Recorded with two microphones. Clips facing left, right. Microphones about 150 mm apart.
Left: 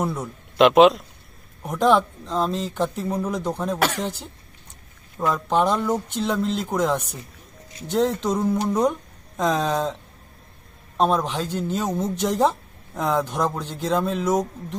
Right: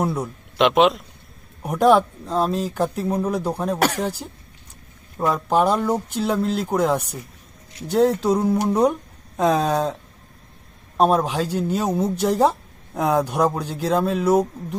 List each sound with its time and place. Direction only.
0.0 s speech: 10° right (ahead or behind)
0.5 s speech: centre (ahead or behind)
1.6 s speech: 10° right (ahead or behind)
3.8 s speech: 40° right (ahead or behind)
5.3 s speech: 10° right (ahead or behind)